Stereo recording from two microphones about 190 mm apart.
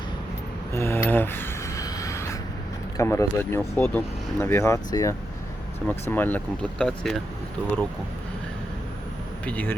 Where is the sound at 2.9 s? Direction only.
15° left (ahead or behind).